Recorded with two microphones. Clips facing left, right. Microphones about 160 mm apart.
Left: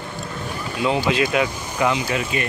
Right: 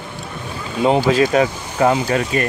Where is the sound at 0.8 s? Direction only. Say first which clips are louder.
Right 6 dB; 40° right (ahead or behind).